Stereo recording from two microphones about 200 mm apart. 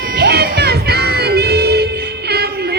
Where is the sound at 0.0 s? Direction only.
50° right (ahead or behind).